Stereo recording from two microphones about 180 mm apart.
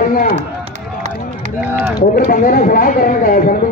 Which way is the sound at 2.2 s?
50° left (ahead or behind).